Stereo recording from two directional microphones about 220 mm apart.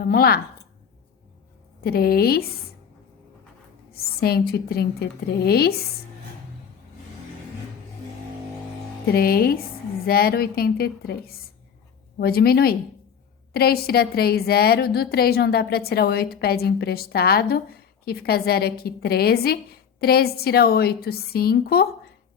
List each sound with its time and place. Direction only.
0.0 s a woman's voice: 45° left (ahead or behind)
1.8 s a woman's voice: 45° left (ahead or behind)
3.9 s a woman's voice: 45° left (ahead or behind)
9.0 s a woman's voice: 45° left (ahead or behind)